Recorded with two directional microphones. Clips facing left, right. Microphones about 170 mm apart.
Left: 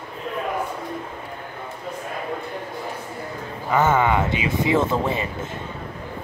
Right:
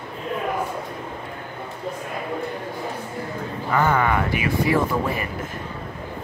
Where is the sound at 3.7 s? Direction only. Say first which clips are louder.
Left 2 dB; 20° left (ahead or behind).